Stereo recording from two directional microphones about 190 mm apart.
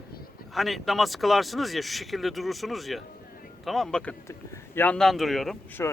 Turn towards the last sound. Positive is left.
turn(degrees=5)  # may be behind; listen again after turning